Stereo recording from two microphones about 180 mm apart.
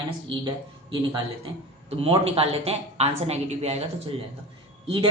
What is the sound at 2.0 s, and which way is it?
Speech, 35° right (ahead or behind).